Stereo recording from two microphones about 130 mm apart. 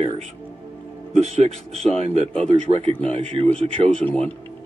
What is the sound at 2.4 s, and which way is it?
Speech, 50° right (ahead or behind).